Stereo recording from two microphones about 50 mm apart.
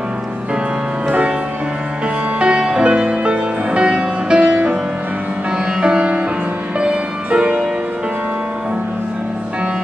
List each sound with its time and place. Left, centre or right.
1.0 s music: right
2.4 s music: centre
5.8 s music: centre